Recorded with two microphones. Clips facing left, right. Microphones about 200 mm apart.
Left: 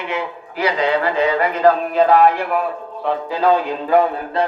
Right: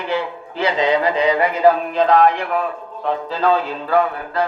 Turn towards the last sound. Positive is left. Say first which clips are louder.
# left 2 dB
turn(degrees=20)  # may be behind; listen again after turning